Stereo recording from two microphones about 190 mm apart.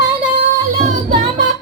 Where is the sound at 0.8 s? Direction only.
40° right (ahead or behind).